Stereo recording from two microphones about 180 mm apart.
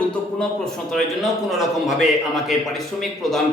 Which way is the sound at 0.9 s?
Centre (ahead or behind).